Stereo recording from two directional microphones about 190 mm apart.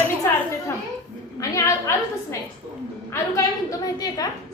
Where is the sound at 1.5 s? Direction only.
15° left (ahead or behind).